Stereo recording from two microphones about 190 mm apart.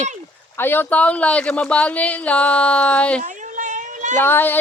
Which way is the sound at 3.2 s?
40° right (ahead or behind).